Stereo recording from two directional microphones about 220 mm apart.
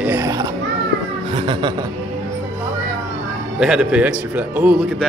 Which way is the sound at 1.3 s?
20° right (ahead or behind).